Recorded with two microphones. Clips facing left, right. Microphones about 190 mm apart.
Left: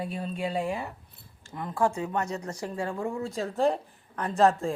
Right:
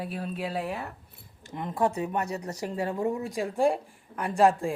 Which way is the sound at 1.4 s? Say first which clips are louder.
Even; 20° right (ahead or behind).